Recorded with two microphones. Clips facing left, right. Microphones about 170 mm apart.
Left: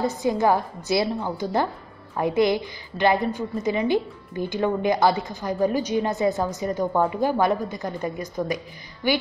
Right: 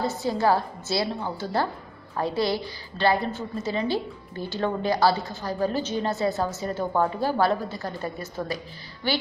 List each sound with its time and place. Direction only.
0.0 s a woman's voice: 20° left (ahead or behind)